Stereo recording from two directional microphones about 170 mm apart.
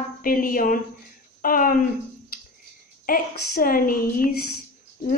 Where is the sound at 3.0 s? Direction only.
55° left (ahead or behind).